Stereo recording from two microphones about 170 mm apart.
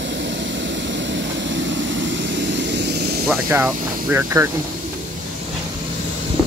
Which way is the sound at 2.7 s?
80° right.